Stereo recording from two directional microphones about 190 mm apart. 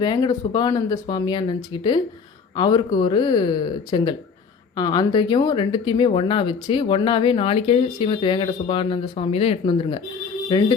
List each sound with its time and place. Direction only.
0.0 s speech: 20° left (ahead or behind)